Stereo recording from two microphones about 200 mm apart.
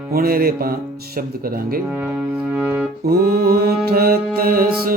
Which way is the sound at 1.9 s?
10° right (ahead or behind).